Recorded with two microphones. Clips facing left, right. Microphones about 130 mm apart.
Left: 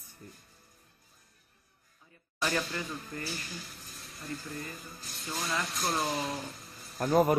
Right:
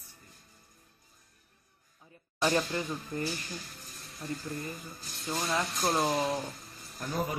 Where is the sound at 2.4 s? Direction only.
20° right (ahead or behind).